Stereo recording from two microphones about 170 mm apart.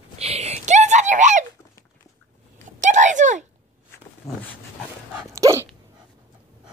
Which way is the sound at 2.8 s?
45° right (ahead or behind).